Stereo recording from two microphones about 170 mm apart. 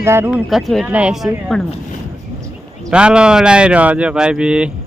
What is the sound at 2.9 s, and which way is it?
Speech, 5° right (ahead or behind).